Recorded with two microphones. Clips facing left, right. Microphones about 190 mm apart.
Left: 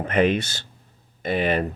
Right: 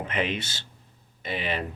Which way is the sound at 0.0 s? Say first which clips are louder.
Left 9 dB; 45° left (ahead or behind).